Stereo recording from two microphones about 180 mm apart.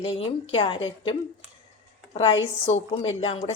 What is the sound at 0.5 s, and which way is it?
Speech, 30° left (ahead or behind).